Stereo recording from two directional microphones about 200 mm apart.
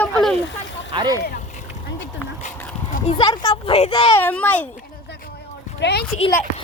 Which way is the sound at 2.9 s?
30° left (ahead or behind).